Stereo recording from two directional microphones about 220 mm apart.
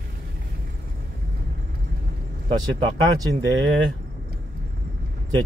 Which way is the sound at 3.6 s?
60° right (ahead or behind).